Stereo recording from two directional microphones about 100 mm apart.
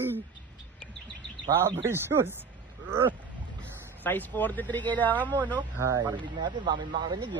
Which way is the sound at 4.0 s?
15° left (ahead or behind).